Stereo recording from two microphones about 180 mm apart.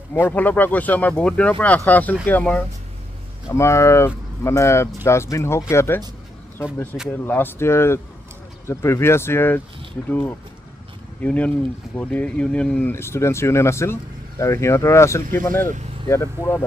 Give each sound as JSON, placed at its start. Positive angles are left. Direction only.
{"t": 0.2, "sound": "speech", "side_deg": 10}
{"t": 7.1, "sound": "speech", "side_deg": 10}